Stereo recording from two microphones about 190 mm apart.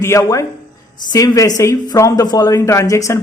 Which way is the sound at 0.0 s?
15° left (ahead or behind).